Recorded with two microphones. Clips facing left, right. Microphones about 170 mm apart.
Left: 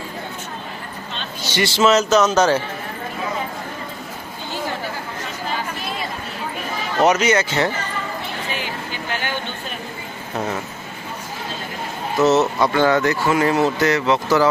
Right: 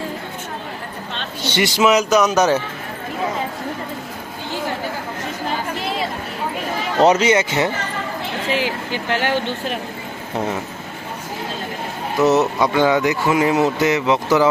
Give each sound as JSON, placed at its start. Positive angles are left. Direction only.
{"t": 1.5, "sound": "speech", "side_deg": -20}
{"t": 7.0, "sound": "speech", "side_deg": -30}
{"t": 8.4, "sound": "speech", "side_deg": -90}
{"t": 12.2, "sound": "speech", "side_deg": -15}